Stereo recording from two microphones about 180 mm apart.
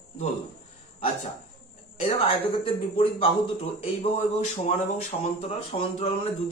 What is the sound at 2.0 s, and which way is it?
Speech, 30° left (ahead or behind).